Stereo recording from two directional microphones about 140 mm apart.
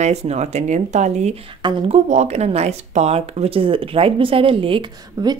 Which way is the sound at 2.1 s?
50° right (ahead or behind).